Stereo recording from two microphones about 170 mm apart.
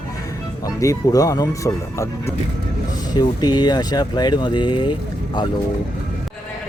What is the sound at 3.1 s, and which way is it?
Speech, 25° left (ahead or behind).